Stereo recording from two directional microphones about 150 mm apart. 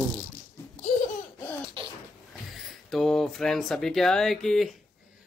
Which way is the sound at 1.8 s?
35° right (ahead or behind).